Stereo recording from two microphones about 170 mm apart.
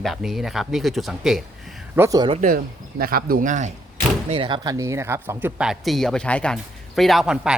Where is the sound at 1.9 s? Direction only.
15° right (ahead or behind).